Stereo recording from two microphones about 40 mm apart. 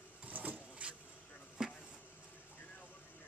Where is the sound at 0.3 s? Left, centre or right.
Right.